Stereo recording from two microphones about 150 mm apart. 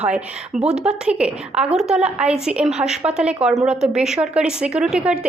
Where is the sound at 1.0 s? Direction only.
10° right (ahead or behind).